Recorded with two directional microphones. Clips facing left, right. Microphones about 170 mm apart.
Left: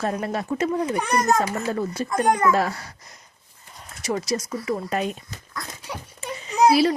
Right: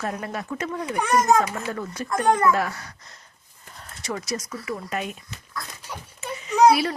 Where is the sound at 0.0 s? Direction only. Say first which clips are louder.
Left 4 dB; 35° left (ahead or behind).